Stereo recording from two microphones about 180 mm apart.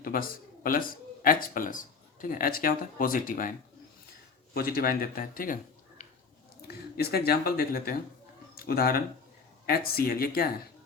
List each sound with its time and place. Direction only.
0.0 s speech: 50° left (ahead or behind)
4.5 s speech: 55° left (ahead or behind)
6.0 s a sound: 40° left (ahead or behind)
6.9 s speech: 60° left (ahead or behind)